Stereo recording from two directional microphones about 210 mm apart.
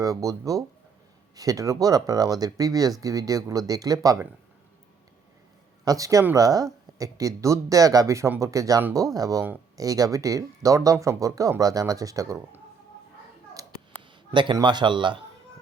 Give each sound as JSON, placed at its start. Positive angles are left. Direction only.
{"t": 0.0, "sound": "speech", "side_deg": -15}
{"t": 5.8, "sound": "speech", "side_deg": -15}
{"t": 13.6, "sound": "a sound", "side_deg": -15}
{"t": 14.3, "sound": "speech", "side_deg": -20}